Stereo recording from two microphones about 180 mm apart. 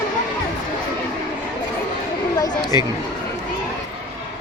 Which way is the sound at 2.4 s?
20° left (ahead or behind).